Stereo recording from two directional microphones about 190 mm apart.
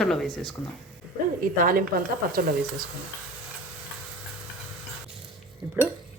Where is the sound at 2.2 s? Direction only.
50° right (ahead or behind).